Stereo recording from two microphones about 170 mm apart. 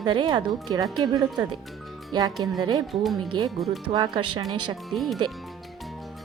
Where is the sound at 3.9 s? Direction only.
25° right (ahead or behind).